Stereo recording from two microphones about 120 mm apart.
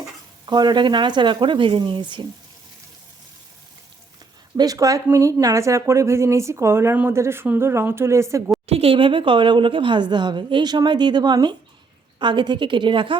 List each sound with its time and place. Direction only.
0.4 s speech: 35° right (ahead or behind)
4.5 s a woman's voice: 30° right (ahead or behind)
8.6 s a woman's voice: 55° right (ahead or behind)